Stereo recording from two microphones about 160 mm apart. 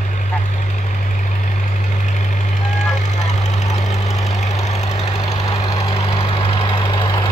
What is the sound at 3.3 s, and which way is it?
Vehicle, 45° left (ahead or behind).